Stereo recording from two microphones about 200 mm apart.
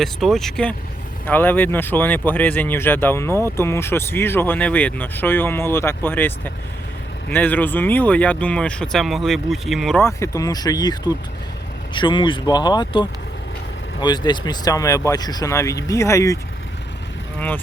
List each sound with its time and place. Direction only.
0.0 s speech: centre (ahead or behind)
10.0 s speech: 15° left (ahead or behind)